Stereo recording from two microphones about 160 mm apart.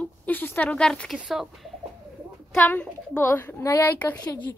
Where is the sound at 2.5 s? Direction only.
10° left (ahead or behind).